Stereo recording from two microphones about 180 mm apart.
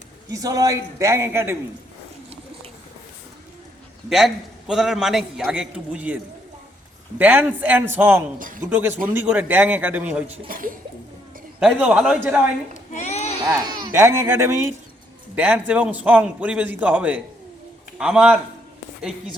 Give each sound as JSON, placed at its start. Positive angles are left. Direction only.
{"t": 0.3, "sound": "a man's voice", "side_deg": -20}
{"t": 4.1, "sound": "a man's voice", "side_deg": 0}
{"t": 7.2, "sound": "a man's voice", "side_deg": -10}
{"t": 10.5, "sound": "speech", "side_deg": -50}
{"t": 11.6, "sound": "a man's voice", "side_deg": -5}
{"t": 12.9, "sound": "a sound", "side_deg": 40}
{"t": 13.4, "sound": "a man's voice", "side_deg": -20}